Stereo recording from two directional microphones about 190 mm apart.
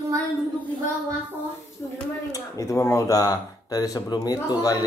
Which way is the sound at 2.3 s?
15° left (ahead or behind).